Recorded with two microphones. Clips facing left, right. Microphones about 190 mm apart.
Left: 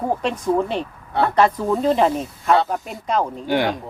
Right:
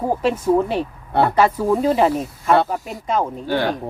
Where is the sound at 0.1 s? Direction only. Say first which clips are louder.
Right 4 dB; 5° right (ahead or behind).